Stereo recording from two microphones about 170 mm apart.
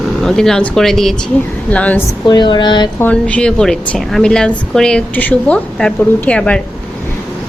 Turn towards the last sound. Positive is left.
turn(degrees=5)  # may be behind; listen again after turning